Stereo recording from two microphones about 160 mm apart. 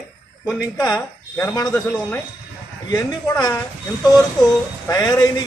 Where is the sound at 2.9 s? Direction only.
25° left (ahead or behind).